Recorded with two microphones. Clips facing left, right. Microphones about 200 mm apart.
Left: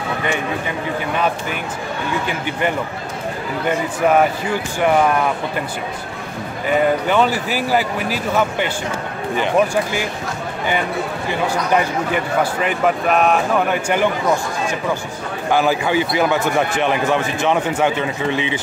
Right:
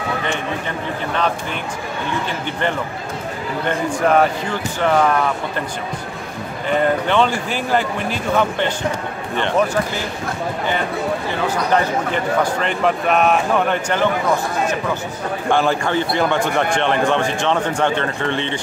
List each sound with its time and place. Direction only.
2.2 s a man's voice: 10° left (ahead or behind)
6.7 s a man's voice: 5° left (ahead or behind)
11.7 s a man's voice: 10° left (ahead or behind)
15.5 s a man's voice: 5° left (ahead or behind)